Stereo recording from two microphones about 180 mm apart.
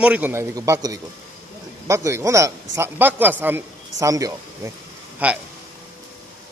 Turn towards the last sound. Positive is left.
turn(degrees=-10)  # may be behind; listen again after turning